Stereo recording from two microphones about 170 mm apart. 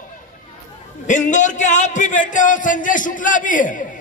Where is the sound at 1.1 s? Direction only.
45° left (ahead or behind).